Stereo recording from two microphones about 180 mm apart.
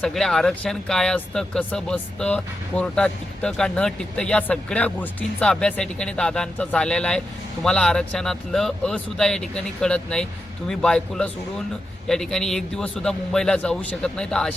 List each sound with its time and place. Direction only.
0.0 s speech: centre (ahead or behind)